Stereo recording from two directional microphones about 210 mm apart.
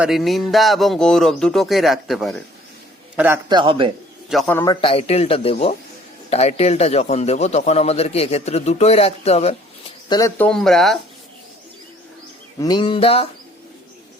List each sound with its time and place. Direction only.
0.0 s speech: centre (ahead or behind)
3.2 s a man's voice: 10° right (ahead or behind)
3.6 s a man's voice: 25° right (ahead or behind)
4.3 s a man's voice: 5° left (ahead or behind); by 9.6 s 30° left (ahead or behind)
10.1 s speech: 15° left (ahead or behind)
12.5 s a man's voice: 20° left (ahead or behind)